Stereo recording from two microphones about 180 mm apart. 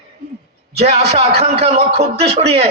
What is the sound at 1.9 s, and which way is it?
Speech, 35° right (ahead or behind).